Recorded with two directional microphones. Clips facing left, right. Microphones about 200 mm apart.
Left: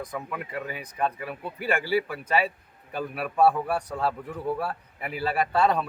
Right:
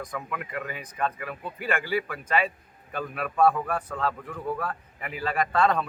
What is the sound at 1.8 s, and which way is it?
Speech, 35° left (ahead or behind).